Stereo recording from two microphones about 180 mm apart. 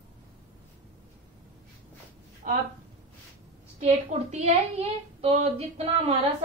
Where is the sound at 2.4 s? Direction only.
50° right (ahead or behind).